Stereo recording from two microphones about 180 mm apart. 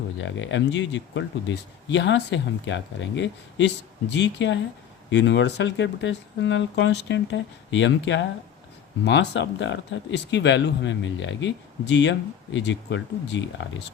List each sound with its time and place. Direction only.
0.2 s speech: 90° left
9.0 s speech: 80° left